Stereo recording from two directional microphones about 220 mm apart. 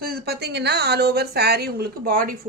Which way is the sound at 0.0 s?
45° right (ahead or behind).